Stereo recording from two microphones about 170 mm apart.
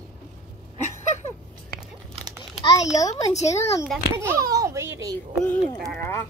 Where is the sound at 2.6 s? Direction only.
20° left (ahead or behind).